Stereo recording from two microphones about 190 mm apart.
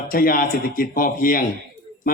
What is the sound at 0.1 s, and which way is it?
Speech, 50° left (ahead or behind).